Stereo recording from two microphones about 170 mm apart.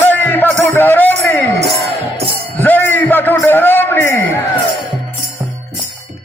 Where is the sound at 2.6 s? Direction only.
10° left (ahead or behind).